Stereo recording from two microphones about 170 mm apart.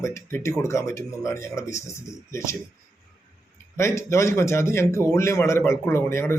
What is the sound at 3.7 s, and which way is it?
A man's voice, 15° left (ahead or behind).